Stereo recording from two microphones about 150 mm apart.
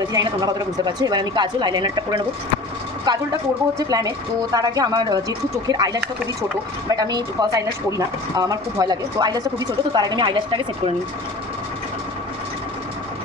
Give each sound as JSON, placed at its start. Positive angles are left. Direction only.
{"t": 0.1, "sound": "a woman's voice", "side_deg": -25}